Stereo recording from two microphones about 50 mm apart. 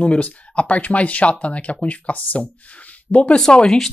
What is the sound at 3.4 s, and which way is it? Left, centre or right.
Speech, centre.